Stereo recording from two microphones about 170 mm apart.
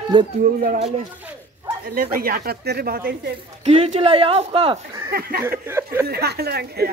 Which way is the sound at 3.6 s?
40° right (ahead or behind).